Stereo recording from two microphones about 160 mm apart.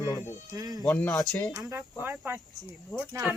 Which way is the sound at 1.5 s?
15° right (ahead or behind).